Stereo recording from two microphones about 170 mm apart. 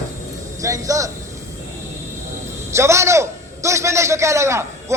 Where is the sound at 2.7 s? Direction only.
15° right (ahead or behind).